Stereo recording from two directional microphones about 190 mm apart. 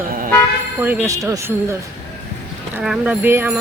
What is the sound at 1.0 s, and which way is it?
Speech, 15° right (ahead or behind).